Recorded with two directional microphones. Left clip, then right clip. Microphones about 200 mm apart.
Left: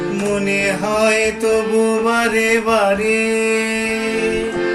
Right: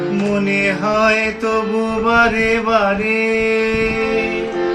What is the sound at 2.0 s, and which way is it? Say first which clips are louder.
Mantra: right 2 dB; 5° left (ahead or behind).